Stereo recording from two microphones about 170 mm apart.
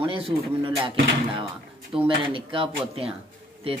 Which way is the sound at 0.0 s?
30° right (ahead or behind).